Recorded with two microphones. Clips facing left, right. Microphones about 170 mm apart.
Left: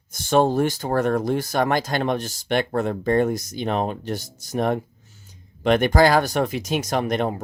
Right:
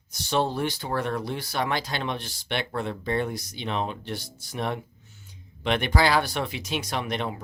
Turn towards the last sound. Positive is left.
turn(degrees=45)  # may be behind; listen again after turning